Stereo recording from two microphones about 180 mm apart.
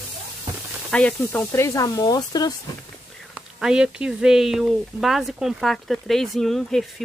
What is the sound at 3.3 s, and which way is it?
Speech, 5° right (ahead or behind).